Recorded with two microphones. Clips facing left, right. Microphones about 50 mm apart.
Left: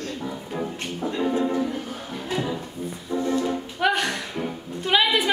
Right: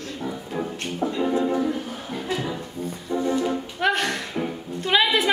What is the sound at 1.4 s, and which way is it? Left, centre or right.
Music, centre.